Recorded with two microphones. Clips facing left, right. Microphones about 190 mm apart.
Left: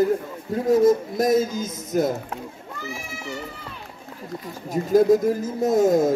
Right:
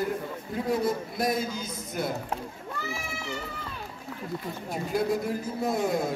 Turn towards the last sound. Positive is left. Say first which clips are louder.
# left 9 dB
turn(degrees=45)  # may be behind; listen again after turning